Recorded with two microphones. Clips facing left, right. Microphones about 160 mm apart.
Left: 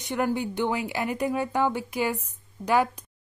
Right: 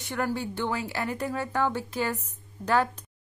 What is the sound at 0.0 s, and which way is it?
A woman's voice, 15° left (ahead or behind).